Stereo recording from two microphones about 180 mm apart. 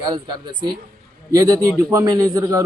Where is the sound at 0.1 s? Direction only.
25° right (ahead or behind).